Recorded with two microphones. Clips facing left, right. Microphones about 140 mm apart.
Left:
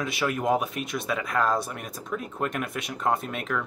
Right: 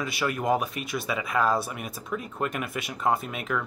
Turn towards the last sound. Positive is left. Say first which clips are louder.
# even
turn(degrees=-5)  # may be behind; listen again after turning